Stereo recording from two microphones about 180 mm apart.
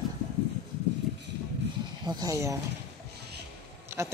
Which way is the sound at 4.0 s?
15° right (ahead or behind).